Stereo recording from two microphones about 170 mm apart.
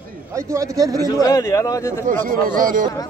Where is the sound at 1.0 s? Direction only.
20° left (ahead or behind).